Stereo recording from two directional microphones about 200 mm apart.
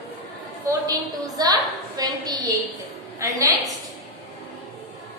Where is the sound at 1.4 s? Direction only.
20° right (ahead or behind).